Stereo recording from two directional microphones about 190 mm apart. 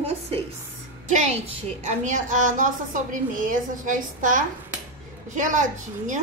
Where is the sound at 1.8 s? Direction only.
40° right (ahead or behind).